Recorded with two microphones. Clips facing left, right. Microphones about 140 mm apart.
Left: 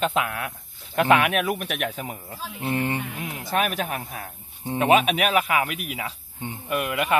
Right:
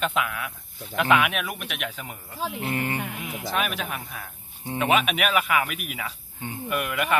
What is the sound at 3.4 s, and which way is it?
Speech, 45° left (ahead or behind).